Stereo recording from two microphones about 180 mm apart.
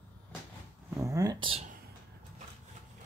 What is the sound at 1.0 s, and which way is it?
Speech, 20° right (ahead or behind).